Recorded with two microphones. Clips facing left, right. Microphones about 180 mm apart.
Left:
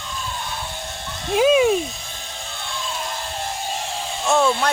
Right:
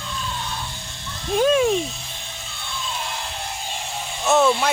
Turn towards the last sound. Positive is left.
turn(degrees=0)  # may be behind; listen again after turning